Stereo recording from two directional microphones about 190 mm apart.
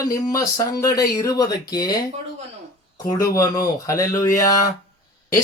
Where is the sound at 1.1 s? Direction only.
20° left (ahead or behind).